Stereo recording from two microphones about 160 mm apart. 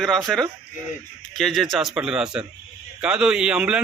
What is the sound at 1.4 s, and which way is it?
A man's voice, centre (ahead or behind).